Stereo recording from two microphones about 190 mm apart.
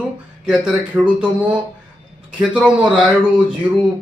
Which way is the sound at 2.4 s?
5° right (ahead or behind).